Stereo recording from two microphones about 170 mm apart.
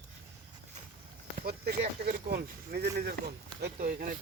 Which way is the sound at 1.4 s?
60° right (ahead or behind).